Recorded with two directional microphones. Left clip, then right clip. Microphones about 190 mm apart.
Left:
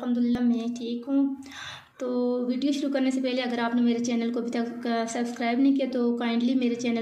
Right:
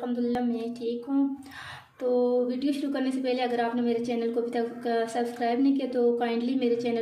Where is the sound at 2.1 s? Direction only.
40° left (ahead or behind).